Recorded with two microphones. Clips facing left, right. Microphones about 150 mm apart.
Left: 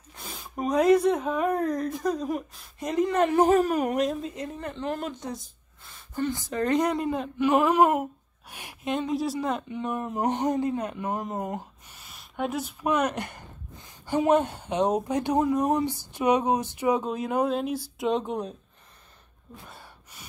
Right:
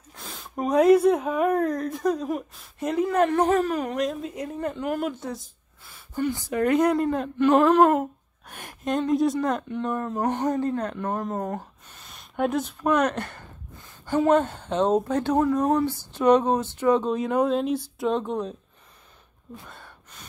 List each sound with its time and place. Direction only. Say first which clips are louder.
0.1 s speech: right 2 dB; centre (ahead or behind)
3.3 s speech: left 1 dB; 10° left (ahead or behind)
4.1 s speech: right 1 dB; 5° right (ahead or behind)
17.9 s speech: right 1 dB; 20° left (ahead or behind)
19.7 s gasp: right 1 dB; 10° left (ahead or behind)